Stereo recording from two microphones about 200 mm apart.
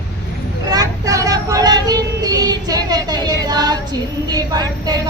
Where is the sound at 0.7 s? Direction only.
20° right (ahead or behind).